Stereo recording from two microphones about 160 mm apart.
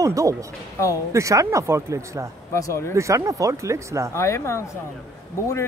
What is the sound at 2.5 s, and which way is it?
Speech, 15° left (ahead or behind).